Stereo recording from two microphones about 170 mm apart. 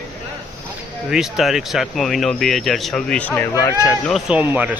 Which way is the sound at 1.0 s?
Centre (ahead or behind).